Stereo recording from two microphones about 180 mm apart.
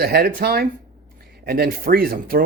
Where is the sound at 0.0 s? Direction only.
60° right (ahead or behind).